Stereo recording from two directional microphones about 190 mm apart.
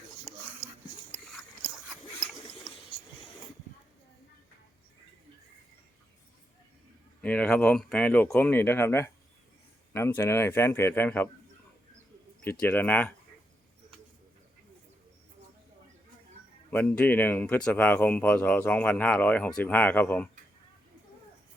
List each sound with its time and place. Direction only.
7.2 s speech: 10° left (ahead or behind)
12.4 s speech: 10° left (ahead or behind)
16.7 s speech: 10° left (ahead or behind)